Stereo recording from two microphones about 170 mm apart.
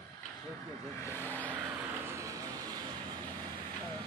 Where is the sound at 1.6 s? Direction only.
15° right (ahead or behind).